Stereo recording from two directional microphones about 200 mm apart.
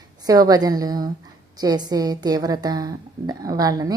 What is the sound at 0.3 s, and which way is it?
A woman's voice, 20° right (ahead or behind).